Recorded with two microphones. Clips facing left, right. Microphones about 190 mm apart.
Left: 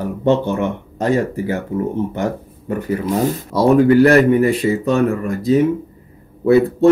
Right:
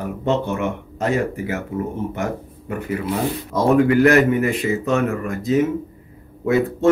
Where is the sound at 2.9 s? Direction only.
40° left (ahead or behind).